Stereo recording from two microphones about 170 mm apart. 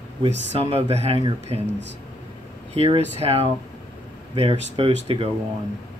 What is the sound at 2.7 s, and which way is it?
Speech, 35° right (ahead or behind).